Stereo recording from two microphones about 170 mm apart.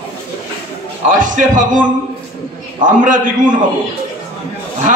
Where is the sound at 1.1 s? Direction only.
50° right (ahead or behind).